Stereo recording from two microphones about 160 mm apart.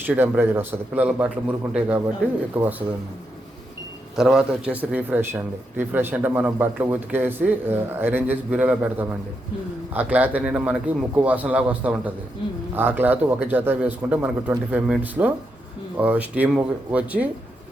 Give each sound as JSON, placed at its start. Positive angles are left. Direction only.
{"t": 0.0, "sound": "a man's voice", "side_deg": -10}
{"t": 4.2, "sound": "a man's voice", "side_deg": -5}